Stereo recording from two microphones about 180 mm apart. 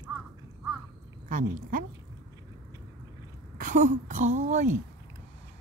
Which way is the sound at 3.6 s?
45° right (ahead or behind).